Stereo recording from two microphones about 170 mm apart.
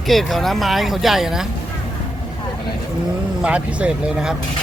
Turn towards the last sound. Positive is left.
turn(degrees=-5)  # may be behind; listen again after turning